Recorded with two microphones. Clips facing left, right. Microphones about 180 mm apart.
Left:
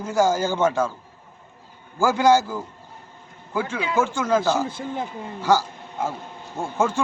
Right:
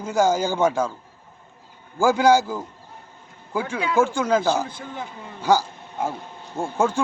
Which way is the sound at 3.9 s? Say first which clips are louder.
Right 1 dB; 10° right (ahead or behind).